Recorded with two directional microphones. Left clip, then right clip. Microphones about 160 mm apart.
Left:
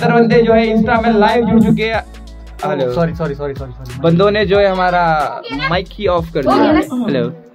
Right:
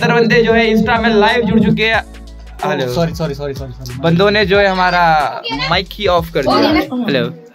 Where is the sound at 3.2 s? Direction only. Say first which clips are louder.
Even; 70° right (ahead or behind).